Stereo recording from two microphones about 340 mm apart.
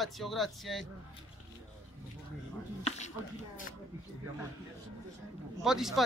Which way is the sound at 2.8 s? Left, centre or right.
Centre.